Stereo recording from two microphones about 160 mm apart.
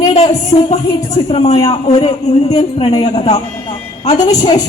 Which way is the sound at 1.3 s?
40° left (ahead or behind).